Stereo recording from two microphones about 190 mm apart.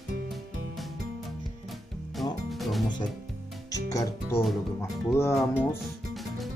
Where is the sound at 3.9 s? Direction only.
15° left (ahead or behind).